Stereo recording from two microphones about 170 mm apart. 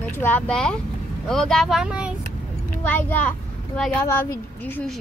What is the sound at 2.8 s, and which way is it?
A child's voice, 10° left (ahead or behind).